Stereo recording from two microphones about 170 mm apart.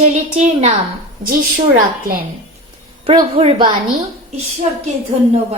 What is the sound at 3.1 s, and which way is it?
Speech, 30° right (ahead or behind).